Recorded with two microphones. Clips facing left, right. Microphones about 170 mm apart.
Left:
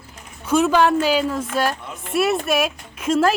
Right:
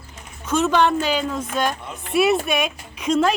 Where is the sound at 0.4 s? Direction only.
10° left (ahead or behind).